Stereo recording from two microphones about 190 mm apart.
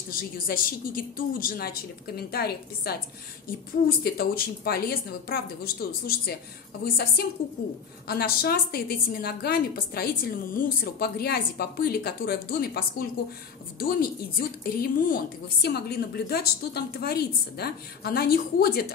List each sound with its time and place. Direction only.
0.1 s a woman's voice: 50° left (ahead or behind)
4.0 s a woman's voice: 55° left (ahead or behind)